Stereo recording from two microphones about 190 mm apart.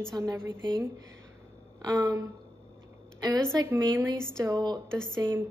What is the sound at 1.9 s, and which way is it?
Speech, 15° right (ahead or behind).